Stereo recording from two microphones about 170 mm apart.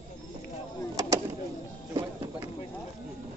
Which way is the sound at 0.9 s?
20° right (ahead or behind).